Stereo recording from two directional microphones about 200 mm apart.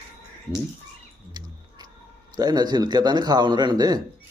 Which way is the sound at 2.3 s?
20° right (ahead or behind).